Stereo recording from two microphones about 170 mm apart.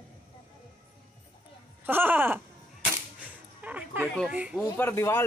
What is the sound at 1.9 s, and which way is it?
Speech, 10° right (ahead or behind).